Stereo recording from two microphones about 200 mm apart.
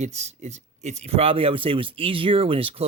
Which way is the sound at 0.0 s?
35° right (ahead or behind).